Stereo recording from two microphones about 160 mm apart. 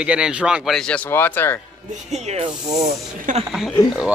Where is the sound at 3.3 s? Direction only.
50° right (ahead or behind).